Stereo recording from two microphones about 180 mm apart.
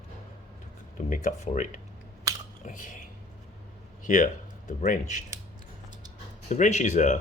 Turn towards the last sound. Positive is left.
turn(degrees=40)  # may be behind; listen again after turning